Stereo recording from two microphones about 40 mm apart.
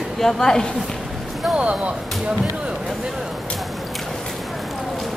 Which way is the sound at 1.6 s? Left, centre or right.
Right.